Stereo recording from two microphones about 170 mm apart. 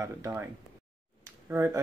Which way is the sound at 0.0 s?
15° right (ahead or behind).